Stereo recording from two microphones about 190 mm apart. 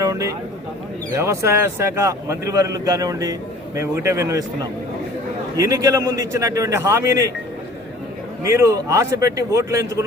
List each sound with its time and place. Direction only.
0.0 s a sound: 15° right (ahead or behind)
1.2 s a man's voice: 15° right (ahead or behind)
5.5 s a man's voice: 15° right (ahead or behind)
8.4 s a man's voice: 15° right (ahead or behind)